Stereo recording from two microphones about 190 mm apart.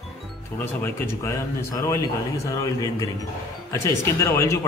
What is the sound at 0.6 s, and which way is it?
Speech, 10° left (ahead or behind).